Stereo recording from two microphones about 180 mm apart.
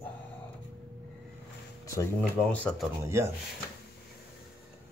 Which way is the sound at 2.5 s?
10° left (ahead or behind).